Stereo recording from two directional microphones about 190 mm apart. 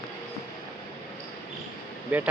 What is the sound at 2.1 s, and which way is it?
Speech, 10° right (ahead or behind).